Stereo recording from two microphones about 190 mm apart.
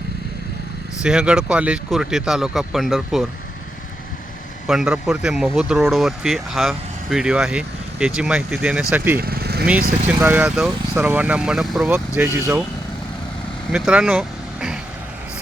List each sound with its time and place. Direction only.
1.0 s speech: 5° right (ahead or behind)
4.6 s speech: centre (ahead or behind)
9.2 s lawn mower: 55° right (ahead or behind)
10.1 s speech: 10° right (ahead or behind)
13.7 s speech: 5° right (ahead or behind)